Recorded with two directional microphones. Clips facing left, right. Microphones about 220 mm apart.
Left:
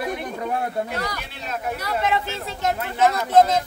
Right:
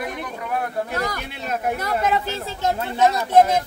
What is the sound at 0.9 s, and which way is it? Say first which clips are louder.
Speech: right 3 dB; 50° right (ahead or behind).